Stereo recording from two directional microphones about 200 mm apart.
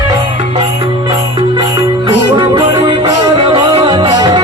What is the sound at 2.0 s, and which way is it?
Music, 20° right (ahead or behind).